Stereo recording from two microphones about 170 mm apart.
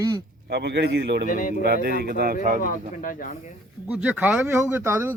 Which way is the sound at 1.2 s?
50° left (ahead or behind).